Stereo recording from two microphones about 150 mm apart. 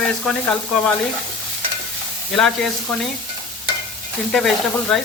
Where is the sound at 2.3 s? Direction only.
Centre (ahead or behind).